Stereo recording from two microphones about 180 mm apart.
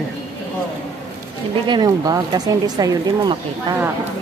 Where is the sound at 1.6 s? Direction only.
25° right (ahead or behind).